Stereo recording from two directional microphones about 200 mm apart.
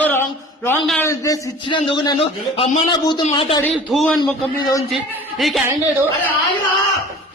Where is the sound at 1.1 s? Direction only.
15° left (ahead or behind).